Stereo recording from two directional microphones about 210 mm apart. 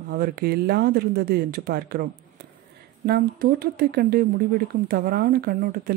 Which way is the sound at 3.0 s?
45° right (ahead or behind).